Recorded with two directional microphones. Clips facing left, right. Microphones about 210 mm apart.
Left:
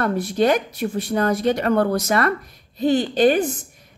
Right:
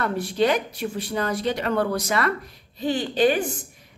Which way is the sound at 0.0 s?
45° left (ahead or behind).